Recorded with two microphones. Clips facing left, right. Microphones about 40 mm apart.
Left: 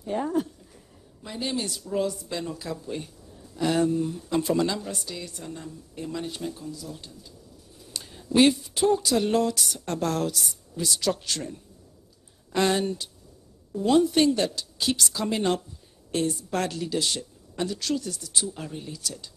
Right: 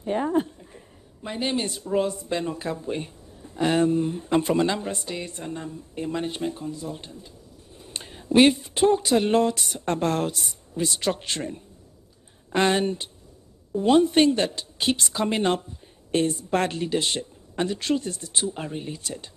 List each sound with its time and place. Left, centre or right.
0.0 s speech: right